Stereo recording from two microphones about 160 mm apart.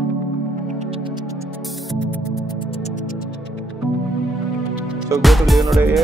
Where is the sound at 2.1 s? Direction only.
20° left (ahead or behind).